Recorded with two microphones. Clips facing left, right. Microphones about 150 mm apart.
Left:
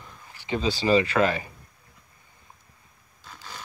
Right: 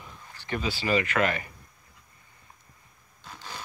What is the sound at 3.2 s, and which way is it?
Scrape, 10° right (ahead or behind).